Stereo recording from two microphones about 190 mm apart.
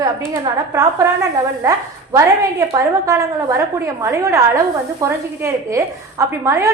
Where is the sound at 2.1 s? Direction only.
15° right (ahead or behind).